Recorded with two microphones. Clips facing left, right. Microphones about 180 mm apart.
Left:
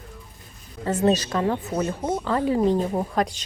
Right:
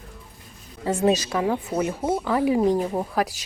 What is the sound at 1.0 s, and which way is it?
Speech, 10° right (ahead or behind).